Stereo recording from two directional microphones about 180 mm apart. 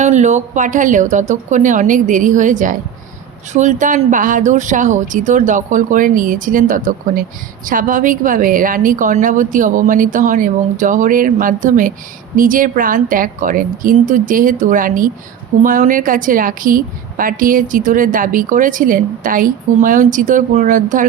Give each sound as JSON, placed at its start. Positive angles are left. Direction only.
{"t": 0.0, "sound": "speech", "side_deg": -40}